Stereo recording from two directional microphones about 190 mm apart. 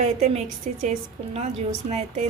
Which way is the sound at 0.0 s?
35° right (ahead or behind).